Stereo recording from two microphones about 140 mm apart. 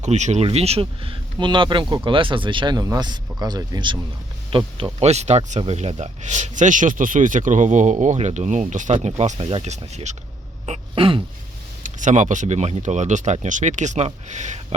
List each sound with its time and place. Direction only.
0.0 s speech: 55° right (ahead or behind); by 3.9 s 30° right (ahead or behind)
4.5 s speech: 45° right (ahead or behind)
10.7 s speech: 40° right (ahead or behind)
11.8 s speech: 65° right (ahead or behind)